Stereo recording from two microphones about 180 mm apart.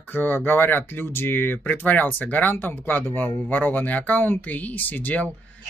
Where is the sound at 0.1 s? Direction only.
10° left (ahead or behind).